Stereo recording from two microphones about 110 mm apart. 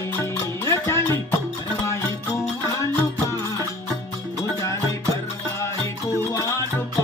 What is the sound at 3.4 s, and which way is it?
Music, 30° left (ahead or behind).